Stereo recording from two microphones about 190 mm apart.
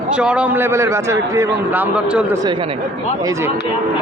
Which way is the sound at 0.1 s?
5° right (ahead or behind).